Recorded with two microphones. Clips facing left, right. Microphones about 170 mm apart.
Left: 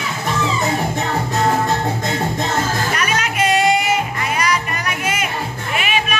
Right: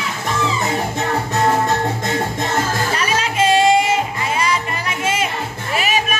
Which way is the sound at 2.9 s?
30° right (ahead or behind).